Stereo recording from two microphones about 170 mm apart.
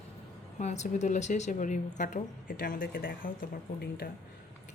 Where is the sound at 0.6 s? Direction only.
40° left (ahead or behind); by 4.1 s 60° left (ahead or behind).